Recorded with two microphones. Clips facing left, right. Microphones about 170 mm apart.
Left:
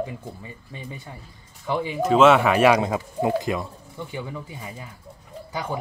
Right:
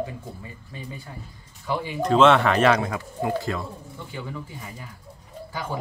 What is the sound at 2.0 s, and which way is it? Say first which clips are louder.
Speech: left 1 dB; 5° left (ahead or behind).